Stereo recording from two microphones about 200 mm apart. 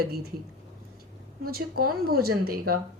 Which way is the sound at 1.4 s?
50° right (ahead or behind).